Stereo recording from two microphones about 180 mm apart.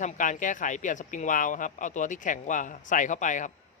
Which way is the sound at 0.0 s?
45° left (ahead or behind).